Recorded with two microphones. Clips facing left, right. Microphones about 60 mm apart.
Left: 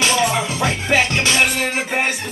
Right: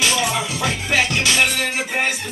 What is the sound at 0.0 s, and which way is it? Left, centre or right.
Music, left.